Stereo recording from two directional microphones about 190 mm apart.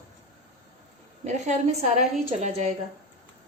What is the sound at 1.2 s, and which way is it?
A woman's voice, 35° right (ahead or behind).